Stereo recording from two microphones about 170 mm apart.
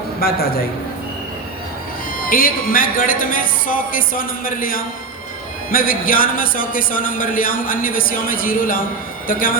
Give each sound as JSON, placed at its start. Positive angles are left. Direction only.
{"t": 0.2, "sound": "speech", "side_deg": 65}
{"t": 2.2, "sound": "speech", "side_deg": 55}